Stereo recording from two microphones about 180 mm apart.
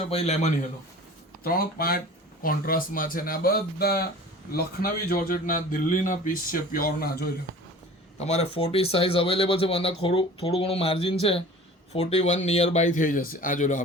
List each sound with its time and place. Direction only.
0.1 s speech: 35° left (ahead or behind)
1.5 s a man's voice: 55° left (ahead or behind)
8.2 s a man's voice: 35° left (ahead or behind)